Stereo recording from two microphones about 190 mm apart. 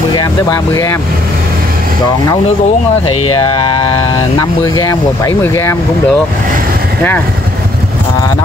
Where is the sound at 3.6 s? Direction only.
25° left (ahead or behind).